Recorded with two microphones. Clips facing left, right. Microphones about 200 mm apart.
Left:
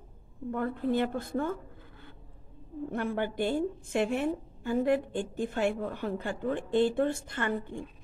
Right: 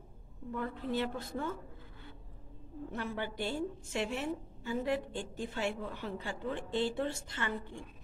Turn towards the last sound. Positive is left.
turn(degrees=50)  # may be behind; listen again after turning